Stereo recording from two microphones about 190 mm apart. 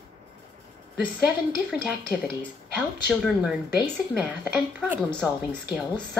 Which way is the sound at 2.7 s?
Centre (ahead or behind).